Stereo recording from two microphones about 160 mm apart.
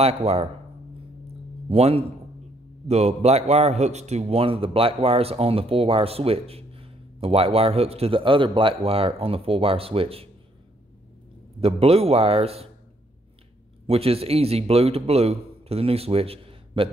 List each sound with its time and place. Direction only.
0.0 s a man's voice: 40° right (ahead or behind)
1.7 s a man's voice: 40° right (ahead or behind)
11.6 s a man's voice: 40° right (ahead or behind)
13.8 s a man's voice: 40° right (ahead or behind)